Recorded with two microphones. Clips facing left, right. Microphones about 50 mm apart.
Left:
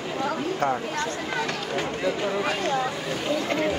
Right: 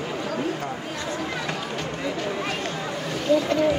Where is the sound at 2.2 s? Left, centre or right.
Centre.